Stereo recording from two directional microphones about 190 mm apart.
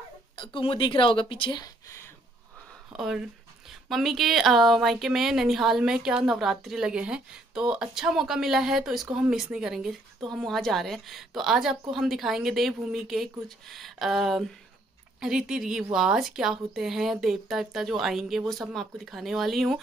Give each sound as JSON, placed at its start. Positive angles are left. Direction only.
{"t": 0.4, "sound": "speech", "side_deg": 30}
{"t": 3.0, "sound": "a woman's voice", "side_deg": 0}